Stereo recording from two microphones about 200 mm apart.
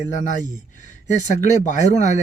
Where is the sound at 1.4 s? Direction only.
40° left (ahead or behind).